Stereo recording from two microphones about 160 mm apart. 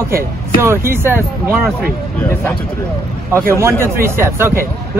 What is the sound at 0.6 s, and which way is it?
Speech, 15° right (ahead or behind).